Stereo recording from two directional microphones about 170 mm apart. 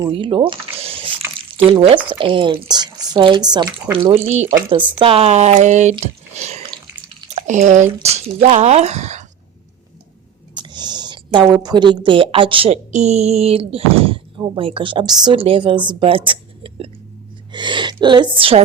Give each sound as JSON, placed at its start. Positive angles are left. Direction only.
{"t": 0.0, "sound": "a sound", "side_deg": -30}
{"t": 1.5, "sound": "speech", "side_deg": -35}
{"t": 2.6, "sound": "drip", "side_deg": -25}
{"t": 3.9, "sound": "speech", "side_deg": -35}
{"t": 10.5, "sound": "a woman's voice", "side_deg": -25}